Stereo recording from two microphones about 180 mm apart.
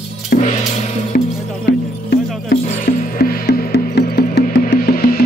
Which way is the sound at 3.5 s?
65° left (ahead or behind).